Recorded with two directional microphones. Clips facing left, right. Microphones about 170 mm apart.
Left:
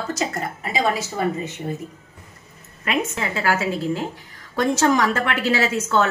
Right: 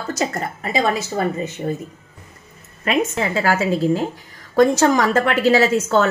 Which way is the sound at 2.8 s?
40° right (ahead or behind).